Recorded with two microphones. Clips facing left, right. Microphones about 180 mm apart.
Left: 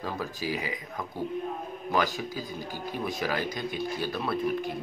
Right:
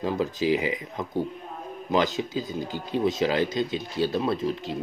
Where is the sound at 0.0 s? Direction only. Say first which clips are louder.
Right 8 dB; 20° right (ahead or behind).